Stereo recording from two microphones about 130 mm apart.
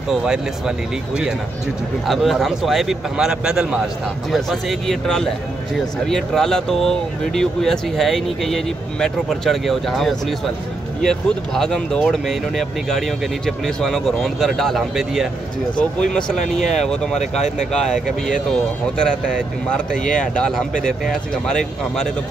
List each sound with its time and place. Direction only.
0.1 s speech: 5° right (ahead or behind)
17.1 s speech: 65° left (ahead or behind)
18.5 s speech: 5° left (ahead or behind)